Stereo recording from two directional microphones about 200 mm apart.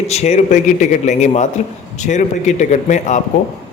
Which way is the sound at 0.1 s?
35° left (ahead or behind).